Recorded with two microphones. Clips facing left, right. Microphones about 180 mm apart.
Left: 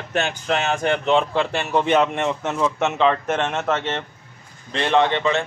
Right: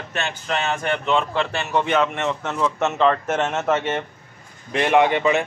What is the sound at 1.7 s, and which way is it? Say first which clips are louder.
A man's voice: left 2 dB; 20° left (ahead or behind).